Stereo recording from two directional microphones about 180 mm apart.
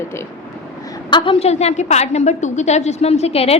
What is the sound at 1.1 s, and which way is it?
A woman's voice, 30° left (ahead or behind).